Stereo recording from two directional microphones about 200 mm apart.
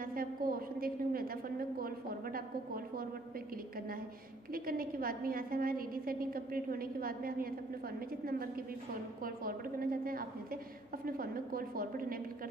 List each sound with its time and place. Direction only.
0.0 s a woman's voice: 45° right (ahead or behind)
4.5 s a woman's voice: 45° right (ahead or behind)